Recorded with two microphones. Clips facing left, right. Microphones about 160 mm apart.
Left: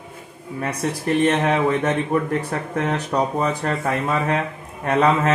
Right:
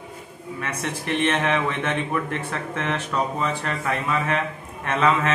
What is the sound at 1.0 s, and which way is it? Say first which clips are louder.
A man's voice: left 4 dB; 40° left (ahead or behind).